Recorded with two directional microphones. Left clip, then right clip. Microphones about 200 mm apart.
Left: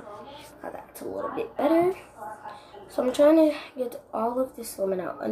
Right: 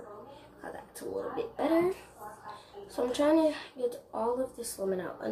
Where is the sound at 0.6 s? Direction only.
10° left (ahead or behind).